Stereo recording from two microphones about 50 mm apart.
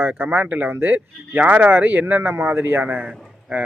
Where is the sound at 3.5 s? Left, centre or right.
Right.